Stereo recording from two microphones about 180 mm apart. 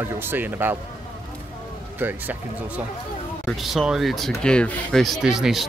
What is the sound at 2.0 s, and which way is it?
Speech, 10° right (ahead or behind).